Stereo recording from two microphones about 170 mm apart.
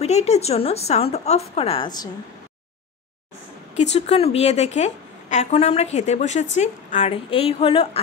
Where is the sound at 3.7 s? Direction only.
40° left (ahead or behind).